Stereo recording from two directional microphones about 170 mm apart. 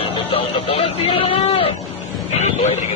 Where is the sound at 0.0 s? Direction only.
30° left (ahead or behind).